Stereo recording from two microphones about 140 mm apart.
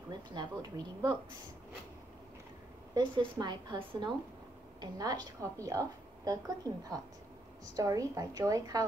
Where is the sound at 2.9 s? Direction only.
30° right (ahead or behind).